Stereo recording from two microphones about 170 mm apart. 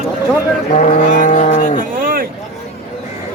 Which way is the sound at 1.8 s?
55° right (ahead or behind).